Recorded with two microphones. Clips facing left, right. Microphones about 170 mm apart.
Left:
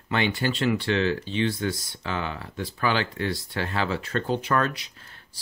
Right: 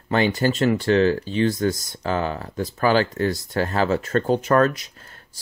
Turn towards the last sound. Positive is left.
turn(degrees=-45)  # may be behind; listen again after turning